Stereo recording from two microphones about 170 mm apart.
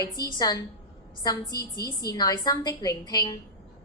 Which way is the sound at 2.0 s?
20° left (ahead or behind).